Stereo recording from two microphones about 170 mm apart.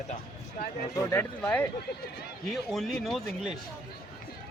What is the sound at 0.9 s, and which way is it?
Speech, 10° left (ahead or behind).